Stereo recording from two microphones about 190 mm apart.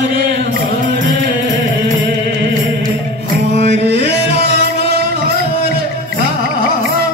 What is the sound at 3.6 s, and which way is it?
Music, 65° right (ahead or behind).